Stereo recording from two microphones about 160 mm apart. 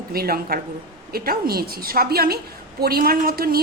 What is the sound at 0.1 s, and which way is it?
A woman's voice, 70° right (ahead or behind).